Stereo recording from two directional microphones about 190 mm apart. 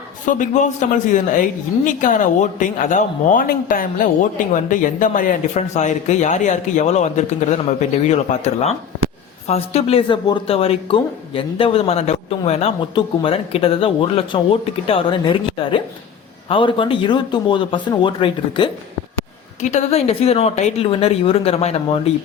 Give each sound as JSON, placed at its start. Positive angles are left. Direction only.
{"t": 0.3, "sound": "speech", "side_deg": 40}
{"t": 9.0, "sound": "a sound", "side_deg": -90}
{"t": 9.5, "sound": "speech", "side_deg": 30}
{"t": 19.6, "sound": "speech", "side_deg": 35}